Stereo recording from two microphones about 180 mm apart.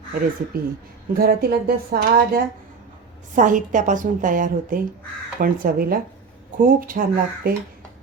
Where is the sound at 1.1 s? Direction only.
60° right (ahead or behind).